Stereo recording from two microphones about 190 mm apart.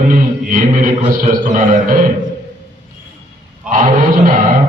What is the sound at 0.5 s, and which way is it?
A man's voice, 45° right (ahead or behind).